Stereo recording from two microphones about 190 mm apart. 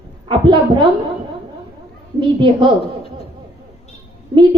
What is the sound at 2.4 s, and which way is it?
Speech, 25° right (ahead or behind).